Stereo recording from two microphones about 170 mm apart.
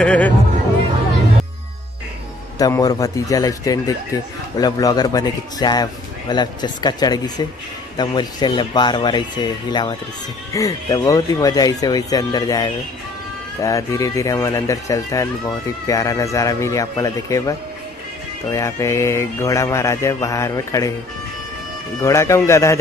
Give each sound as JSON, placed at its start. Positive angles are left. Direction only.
{"t": 0.0, "sound": "mantra", "side_deg": 5}
{"t": 2.6, "sound": "a man's voice", "side_deg": 20}
{"t": 18.5, "sound": "mantra", "side_deg": 20}
{"t": 22.0, "sound": "mantra", "side_deg": 15}